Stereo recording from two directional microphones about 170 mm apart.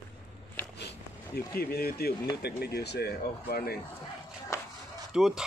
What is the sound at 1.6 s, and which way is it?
Speech, 65° left (ahead or behind).